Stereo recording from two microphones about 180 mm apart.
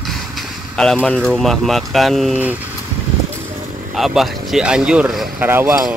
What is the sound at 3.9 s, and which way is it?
Speech, centre (ahead or behind).